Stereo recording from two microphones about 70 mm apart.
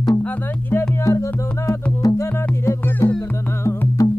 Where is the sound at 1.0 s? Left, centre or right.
Left.